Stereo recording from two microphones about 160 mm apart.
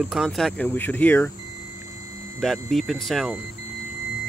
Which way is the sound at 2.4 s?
Centre (ahead or behind).